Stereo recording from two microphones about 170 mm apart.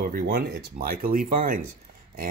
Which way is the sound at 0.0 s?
60° right (ahead or behind).